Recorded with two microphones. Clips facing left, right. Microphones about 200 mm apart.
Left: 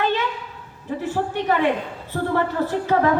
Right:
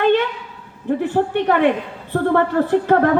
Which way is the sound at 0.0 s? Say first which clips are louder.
Right 7 dB; 60° right (ahead or behind).